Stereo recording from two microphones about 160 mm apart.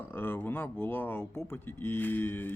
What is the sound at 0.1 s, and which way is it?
Speech, 15° left (ahead or behind).